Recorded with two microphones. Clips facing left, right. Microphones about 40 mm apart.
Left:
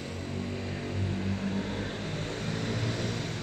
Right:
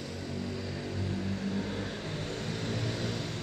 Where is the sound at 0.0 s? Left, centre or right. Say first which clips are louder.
Left 1 dB; left.